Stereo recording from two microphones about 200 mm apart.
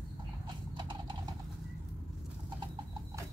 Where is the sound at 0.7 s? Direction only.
20° right (ahead or behind).